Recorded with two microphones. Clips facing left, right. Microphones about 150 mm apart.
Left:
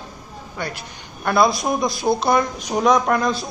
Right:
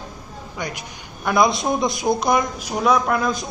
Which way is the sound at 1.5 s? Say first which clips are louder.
Even; 25° right (ahead or behind).